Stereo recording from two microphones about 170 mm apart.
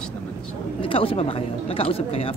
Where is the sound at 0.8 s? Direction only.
30° left (ahead or behind).